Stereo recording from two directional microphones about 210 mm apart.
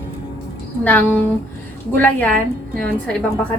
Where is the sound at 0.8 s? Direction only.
10° left (ahead or behind).